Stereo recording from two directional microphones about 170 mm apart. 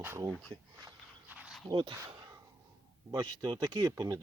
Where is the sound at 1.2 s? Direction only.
5° right (ahead or behind).